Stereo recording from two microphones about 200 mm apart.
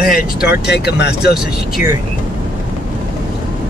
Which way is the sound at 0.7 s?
55° left (ahead or behind).